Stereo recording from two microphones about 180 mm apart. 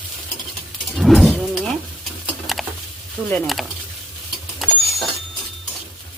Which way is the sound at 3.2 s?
5° left (ahead or behind).